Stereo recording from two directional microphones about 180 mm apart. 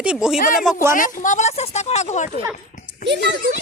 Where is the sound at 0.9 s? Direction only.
45° left (ahead or behind).